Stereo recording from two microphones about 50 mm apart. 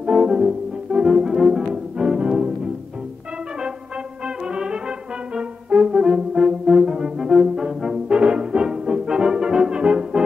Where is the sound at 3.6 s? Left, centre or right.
Centre.